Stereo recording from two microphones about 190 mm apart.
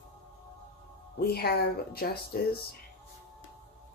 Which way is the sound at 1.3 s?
55° left (ahead or behind).